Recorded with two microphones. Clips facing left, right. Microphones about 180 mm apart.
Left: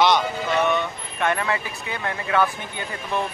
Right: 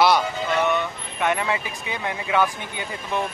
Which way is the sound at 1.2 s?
15° right (ahead or behind).